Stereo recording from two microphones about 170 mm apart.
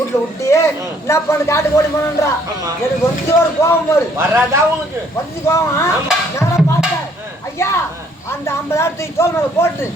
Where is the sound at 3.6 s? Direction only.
15° left (ahead or behind).